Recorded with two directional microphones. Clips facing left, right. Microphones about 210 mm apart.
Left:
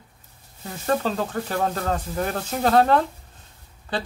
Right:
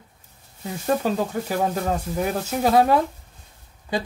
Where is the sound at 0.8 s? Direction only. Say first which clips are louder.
Right 1 dB; 10° right (ahead or behind).